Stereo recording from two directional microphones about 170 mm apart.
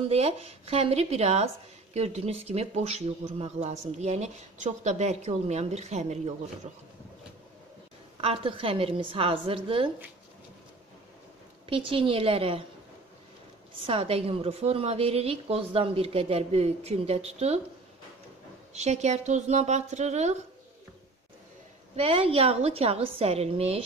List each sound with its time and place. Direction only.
0.1 s speech: 35° right (ahead or behind)
8.2 s speech: 35° right (ahead or behind)
11.7 s speech: 30° right (ahead or behind)
13.7 s speech: 35° right (ahead or behind)
18.7 s speech: 40° right (ahead or behind)
21.9 s speech: 35° right (ahead or behind)